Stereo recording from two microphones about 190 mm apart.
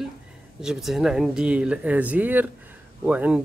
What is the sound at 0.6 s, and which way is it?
Speech, centre (ahead or behind).